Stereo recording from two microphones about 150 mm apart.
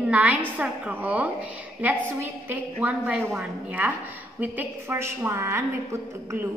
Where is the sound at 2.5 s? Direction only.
10° right (ahead or behind).